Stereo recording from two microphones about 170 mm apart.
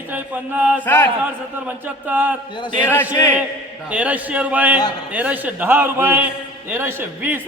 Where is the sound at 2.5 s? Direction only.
25° left (ahead or behind).